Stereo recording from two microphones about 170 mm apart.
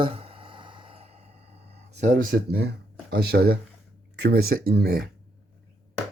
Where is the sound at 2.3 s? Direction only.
70° right (ahead or behind).